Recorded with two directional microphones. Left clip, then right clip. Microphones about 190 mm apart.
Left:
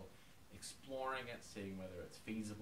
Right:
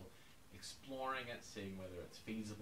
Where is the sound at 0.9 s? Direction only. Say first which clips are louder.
Even; 20° left (ahead or behind).